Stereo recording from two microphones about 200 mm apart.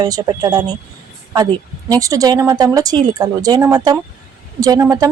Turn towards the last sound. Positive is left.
turn(degrees=-15)  # may be behind; listen again after turning